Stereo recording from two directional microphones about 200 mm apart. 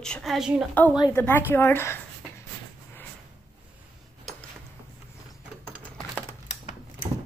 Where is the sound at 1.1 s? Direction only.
10° left (ahead or behind).